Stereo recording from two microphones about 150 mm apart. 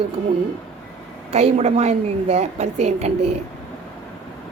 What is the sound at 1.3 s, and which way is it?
A woman's voice, 45° right (ahead or behind).